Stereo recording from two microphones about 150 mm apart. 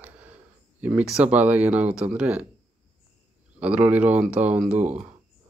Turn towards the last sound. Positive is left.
turn(degrees=-10)  # may be behind; listen again after turning